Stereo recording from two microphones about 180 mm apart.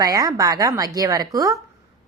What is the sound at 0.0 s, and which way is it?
A woman's voice, 20° right (ahead or behind).